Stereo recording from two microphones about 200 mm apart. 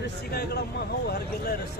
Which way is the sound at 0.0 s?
50° left (ahead or behind).